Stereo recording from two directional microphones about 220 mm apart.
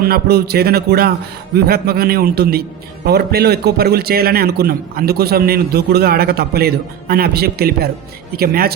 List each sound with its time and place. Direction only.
0.0 s a man's voice: 45° right (ahead or behind)